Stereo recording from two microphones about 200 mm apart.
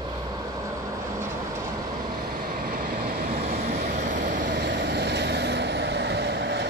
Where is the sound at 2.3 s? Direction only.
45° right (ahead or behind).